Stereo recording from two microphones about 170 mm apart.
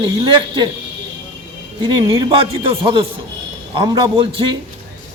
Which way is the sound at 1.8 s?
30° right (ahead or behind).